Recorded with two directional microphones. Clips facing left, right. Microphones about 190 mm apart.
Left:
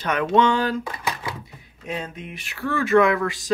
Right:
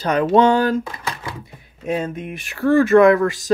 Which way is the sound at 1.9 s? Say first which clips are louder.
Right 8 dB; 50° right (ahead or behind).